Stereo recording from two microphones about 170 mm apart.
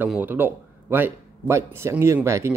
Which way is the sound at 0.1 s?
10° right (ahead or behind).